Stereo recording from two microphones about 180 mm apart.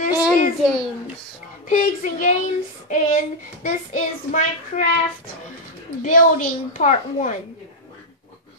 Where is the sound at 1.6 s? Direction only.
45° left (ahead or behind).